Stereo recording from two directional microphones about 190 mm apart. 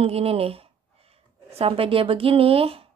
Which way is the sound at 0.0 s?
30° right (ahead or behind).